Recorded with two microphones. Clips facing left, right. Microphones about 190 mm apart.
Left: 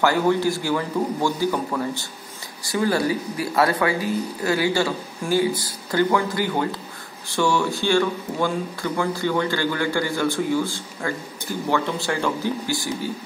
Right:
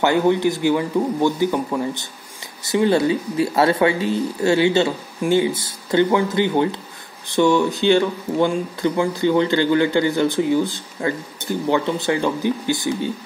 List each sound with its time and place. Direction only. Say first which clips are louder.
0.0 s speech: right 3 dB; 20° right (ahead or behind)